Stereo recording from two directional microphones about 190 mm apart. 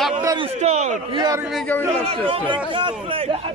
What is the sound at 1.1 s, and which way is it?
Speech, 20° right (ahead or behind).